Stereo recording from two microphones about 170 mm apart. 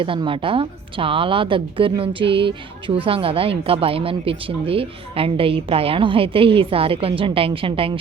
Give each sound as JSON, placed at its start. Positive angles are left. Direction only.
{"t": 0.0, "sound": "speech", "side_deg": -30}